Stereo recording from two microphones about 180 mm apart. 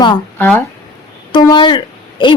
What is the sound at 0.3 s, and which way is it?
Speech, 10° left (ahead or behind).